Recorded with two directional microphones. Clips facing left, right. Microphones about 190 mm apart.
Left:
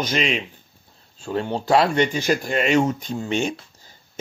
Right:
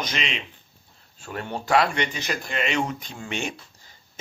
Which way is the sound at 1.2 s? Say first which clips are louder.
Left 7 dB; 30° left (ahead or behind).